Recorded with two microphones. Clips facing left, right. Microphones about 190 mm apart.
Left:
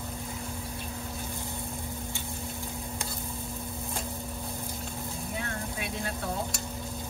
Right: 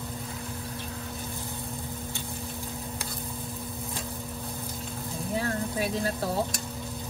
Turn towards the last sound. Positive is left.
turn(degrees=-35)  # may be behind; listen again after turning